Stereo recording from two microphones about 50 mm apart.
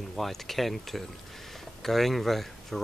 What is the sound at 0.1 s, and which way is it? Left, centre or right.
Speech, centre.